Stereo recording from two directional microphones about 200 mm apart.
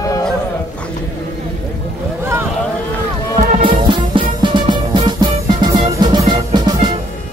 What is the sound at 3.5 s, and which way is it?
Music, 25° right (ahead or behind).